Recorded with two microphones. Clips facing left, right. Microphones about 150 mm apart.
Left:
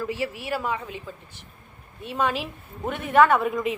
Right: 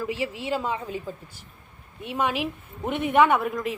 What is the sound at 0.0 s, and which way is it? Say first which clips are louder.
Speech: even; 15° right (ahead or behind).